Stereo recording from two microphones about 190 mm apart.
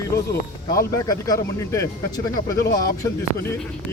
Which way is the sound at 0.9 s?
20° left (ahead or behind).